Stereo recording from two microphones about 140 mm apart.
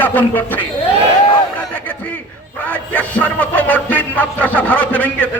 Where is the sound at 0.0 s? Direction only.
15° left (ahead or behind).